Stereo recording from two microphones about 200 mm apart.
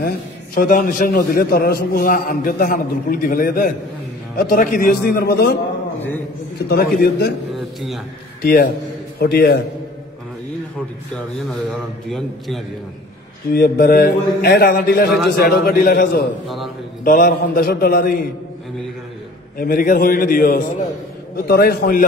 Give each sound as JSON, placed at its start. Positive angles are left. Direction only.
{"t": 0.6, "sound": "a man's voice", "side_deg": 45}
{"t": 6.7, "sound": "a man's voice", "side_deg": 50}
{"t": 7.5, "sound": "a man's voice", "side_deg": 0}
{"t": 8.4, "sound": "a man's voice", "side_deg": 50}
{"t": 12.1, "sound": "a man's voice", "side_deg": 0}
{"t": 13.5, "sound": "a man's voice", "side_deg": 50}
{"t": 16.4, "sound": "a man's voice", "side_deg": 0}
{"t": 17.0, "sound": "a man's voice", "side_deg": 45}
{"t": 19.6, "sound": "a man's voice", "side_deg": 45}